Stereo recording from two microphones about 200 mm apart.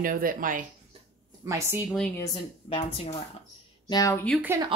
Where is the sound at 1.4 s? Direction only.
15° right (ahead or behind).